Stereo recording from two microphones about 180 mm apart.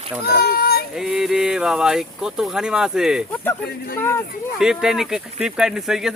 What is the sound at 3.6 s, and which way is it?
Speech, 55° left (ahead or behind).